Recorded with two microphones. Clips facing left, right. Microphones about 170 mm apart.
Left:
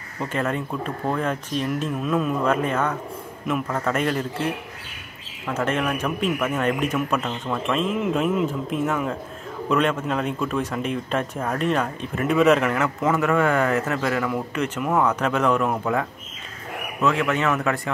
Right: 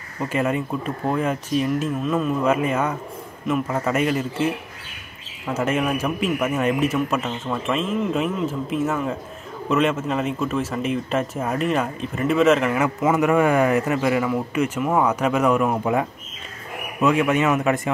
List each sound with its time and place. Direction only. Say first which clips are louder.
0.3 s speech: right 3 dB; 10° right (ahead or behind)
5.5 s a man's voice: right 2 dB; 10° right (ahead or behind)